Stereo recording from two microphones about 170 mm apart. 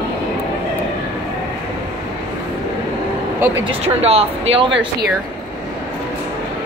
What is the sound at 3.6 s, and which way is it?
Speech, 35° right (ahead or behind).